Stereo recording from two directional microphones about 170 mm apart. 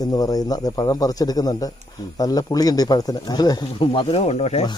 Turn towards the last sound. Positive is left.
turn(degrees=40)  # may be behind; listen again after turning